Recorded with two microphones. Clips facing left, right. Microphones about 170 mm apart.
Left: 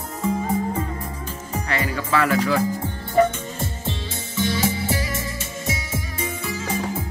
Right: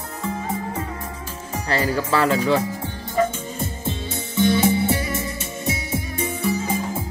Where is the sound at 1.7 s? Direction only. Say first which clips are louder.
Right 4 dB; 35° right (ahead or behind).